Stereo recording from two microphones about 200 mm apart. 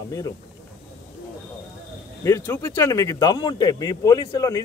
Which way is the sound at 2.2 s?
15° left (ahead or behind).